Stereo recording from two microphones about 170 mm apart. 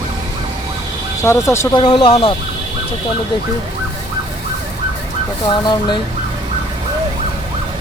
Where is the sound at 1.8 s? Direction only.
30° left (ahead or behind).